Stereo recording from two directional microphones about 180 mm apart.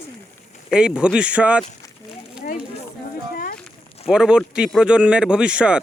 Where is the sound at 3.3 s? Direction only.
55° left (ahead or behind).